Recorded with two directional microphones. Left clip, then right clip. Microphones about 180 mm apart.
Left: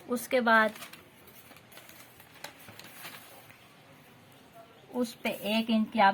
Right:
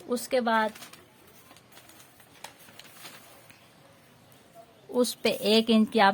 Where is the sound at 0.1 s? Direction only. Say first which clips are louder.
Left 1 dB; 15° right (ahead or behind).